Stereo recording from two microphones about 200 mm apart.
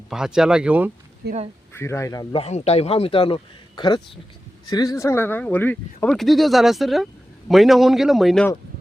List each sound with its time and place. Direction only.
0.1 s speech: 5° right (ahead or behind)
1.2 s speech: 55° right (ahead or behind)
1.7 s speech: 15° left (ahead or behind)
2.4 s a man's voice: 30° left (ahead or behind); by 8.4 s centre (ahead or behind)